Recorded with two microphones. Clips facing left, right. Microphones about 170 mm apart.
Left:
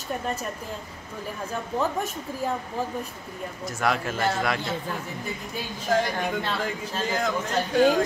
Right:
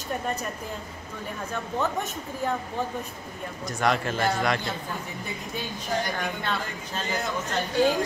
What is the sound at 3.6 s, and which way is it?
Speech, 5° left (ahead or behind).